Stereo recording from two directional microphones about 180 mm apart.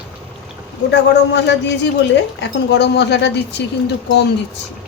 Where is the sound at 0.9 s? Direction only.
75° left (ahead or behind).